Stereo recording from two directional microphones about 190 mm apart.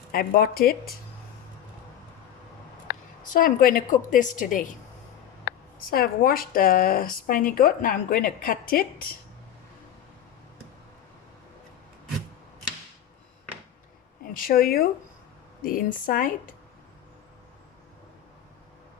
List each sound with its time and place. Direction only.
0.1 s speech: 50° left (ahead or behind)
3.2 s speech: 45° left (ahead or behind)
5.9 s speech: 50° left (ahead or behind)
14.3 s speech: 50° left (ahead or behind)